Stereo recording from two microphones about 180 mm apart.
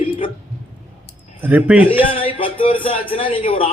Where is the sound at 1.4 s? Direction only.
10° right (ahead or behind).